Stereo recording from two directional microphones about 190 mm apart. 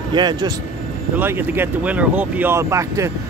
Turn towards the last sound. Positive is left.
turn(degrees=-15)  # may be behind; listen again after turning